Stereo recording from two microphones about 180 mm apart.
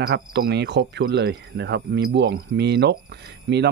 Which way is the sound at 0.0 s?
65° right (ahead or behind).